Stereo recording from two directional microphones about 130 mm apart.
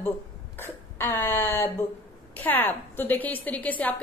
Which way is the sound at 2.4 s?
15° left (ahead or behind).